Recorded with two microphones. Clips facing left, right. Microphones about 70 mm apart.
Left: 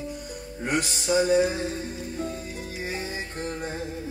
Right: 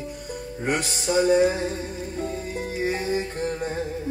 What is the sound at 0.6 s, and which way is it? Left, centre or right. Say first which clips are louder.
Mantra: right 1 dB; right.